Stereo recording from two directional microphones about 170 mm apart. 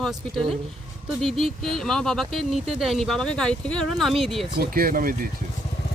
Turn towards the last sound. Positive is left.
turn(degrees=-60)  # may be behind; listen again after turning